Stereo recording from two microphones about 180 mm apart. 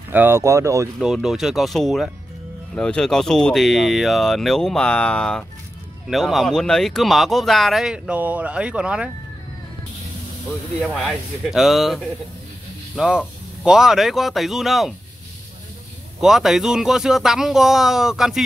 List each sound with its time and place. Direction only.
0.1 s speech: 10° right (ahead or behind)
0.9 s speech: centre (ahead or behind)
10.8 s speech: centre (ahead or behind)
16.2 s speech: centre (ahead or behind)